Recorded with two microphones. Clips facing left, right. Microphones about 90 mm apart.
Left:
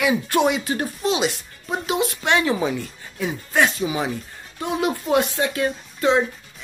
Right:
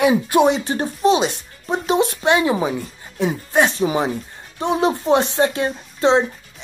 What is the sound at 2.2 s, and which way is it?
Speech, 20° right (ahead or behind).